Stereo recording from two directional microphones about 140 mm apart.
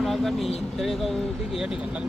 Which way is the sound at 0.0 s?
Centre (ahead or behind).